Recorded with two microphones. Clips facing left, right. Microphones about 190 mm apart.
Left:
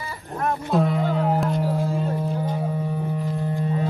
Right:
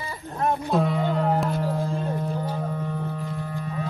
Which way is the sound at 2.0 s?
10° left (ahead or behind).